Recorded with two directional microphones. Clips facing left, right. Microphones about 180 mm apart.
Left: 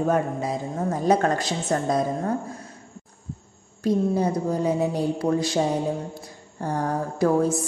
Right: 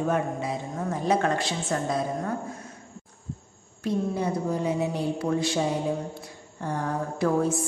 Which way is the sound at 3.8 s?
40° left (ahead or behind).